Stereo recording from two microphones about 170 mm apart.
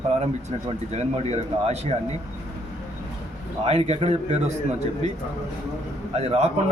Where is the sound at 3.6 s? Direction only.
40° right (ahead or behind).